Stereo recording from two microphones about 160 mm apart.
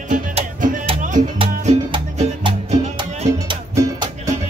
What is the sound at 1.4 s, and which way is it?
Music, 40° right (ahead or behind).